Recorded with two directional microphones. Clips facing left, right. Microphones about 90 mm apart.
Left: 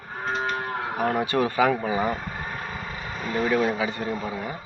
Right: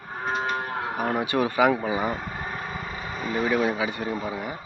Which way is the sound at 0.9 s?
15° right (ahead or behind).